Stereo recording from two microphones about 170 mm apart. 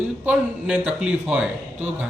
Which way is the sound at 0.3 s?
5° right (ahead or behind).